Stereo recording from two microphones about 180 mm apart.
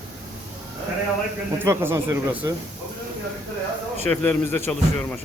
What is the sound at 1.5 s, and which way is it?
Speech, 15° right (ahead or behind).